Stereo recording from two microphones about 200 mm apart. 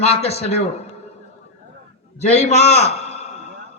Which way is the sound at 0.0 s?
30° left (ahead or behind).